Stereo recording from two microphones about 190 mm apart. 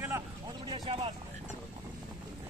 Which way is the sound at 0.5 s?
25° right (ahead or behind).